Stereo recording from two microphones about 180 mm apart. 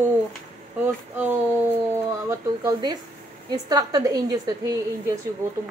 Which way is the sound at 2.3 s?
20° right (ahead or behind).